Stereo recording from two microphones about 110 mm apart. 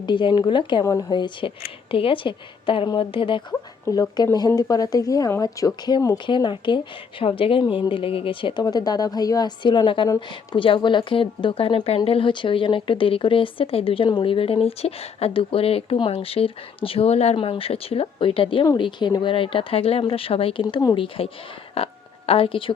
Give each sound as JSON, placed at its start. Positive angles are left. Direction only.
{"t": 0.0, "sound": "speech", "side_deg": 45}
{"t": 0.9, "sound": "a woman's voice", "side_deg": 30}
{"t": 1.1, "sound": "speech", "side_deg": 45}
{"t": 3.8, "sound": "speech", "side_deg": 30}
{"t": 8.6, "sound": "a woman's voice", "side_deg": 35}